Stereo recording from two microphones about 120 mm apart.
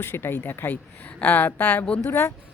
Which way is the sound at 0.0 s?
20° left (ahead or behind).